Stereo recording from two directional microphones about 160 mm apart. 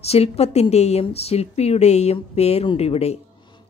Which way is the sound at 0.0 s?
40° left (ahead or behind).